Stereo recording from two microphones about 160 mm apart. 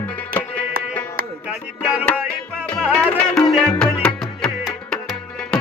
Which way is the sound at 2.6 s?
5° left (ahead or behind).